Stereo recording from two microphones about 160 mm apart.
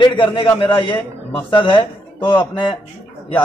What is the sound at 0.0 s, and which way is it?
A man's voice, 30° left (ahead or behind).